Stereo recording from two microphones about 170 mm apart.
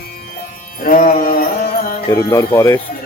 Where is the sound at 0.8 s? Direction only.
55° left (ahead or behind).